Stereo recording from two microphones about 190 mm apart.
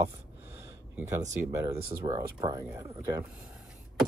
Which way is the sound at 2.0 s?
20° right (ahead or behind).